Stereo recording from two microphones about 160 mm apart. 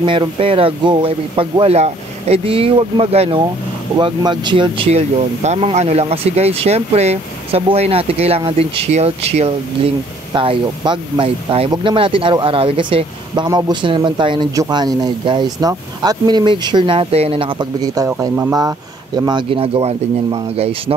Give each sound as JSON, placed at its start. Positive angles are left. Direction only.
{"t": 0.0, "sound": "speech", "side_deg": -30}
{"t": 5.4, "sound": "speech", "side_deg": -40}